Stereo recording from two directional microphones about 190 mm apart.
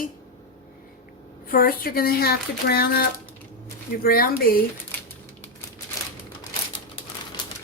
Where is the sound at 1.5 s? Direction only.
50° left (ahead or behind).